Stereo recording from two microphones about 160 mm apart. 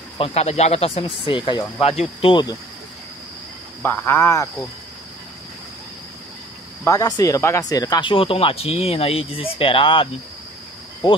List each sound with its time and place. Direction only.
0.2 s speech: 40° left (ahead or behind)
3.8 s speech: 15° left (ahead or behind)
6.8 s speech: 20° left (ahead or behind)